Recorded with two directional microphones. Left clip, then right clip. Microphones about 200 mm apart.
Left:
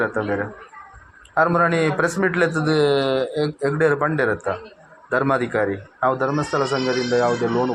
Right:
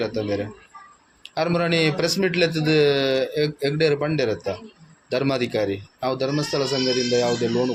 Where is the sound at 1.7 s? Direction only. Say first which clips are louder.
Even; 20° left (ahead or behind).